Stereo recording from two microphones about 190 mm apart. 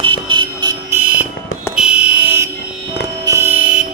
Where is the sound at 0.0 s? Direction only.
25° right (ahead or behind); by 3.8 s 10° right (ahead or behind).